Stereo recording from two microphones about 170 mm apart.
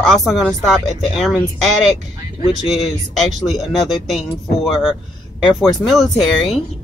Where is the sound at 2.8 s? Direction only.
Centre (ahead or behind).